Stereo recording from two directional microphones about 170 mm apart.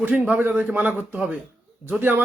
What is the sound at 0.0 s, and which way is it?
Speech, 10° right (ahead or behind).